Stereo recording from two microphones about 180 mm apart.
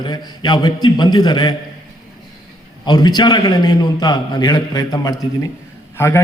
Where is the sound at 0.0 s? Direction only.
25° left (ahead or behind).